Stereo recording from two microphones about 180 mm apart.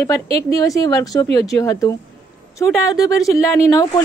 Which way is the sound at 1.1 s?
20° left (ahead or behind).